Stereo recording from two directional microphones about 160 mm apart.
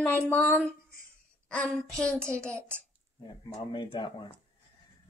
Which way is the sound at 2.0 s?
5° left (ahead or behind).